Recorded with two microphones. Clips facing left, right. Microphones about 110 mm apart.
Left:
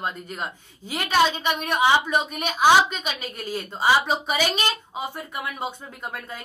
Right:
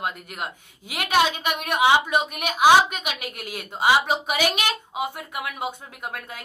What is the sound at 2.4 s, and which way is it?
A woman's voice, 10° right (ahead or behind).